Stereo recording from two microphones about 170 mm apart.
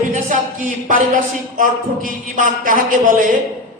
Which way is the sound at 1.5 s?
50° right (ahead or behind).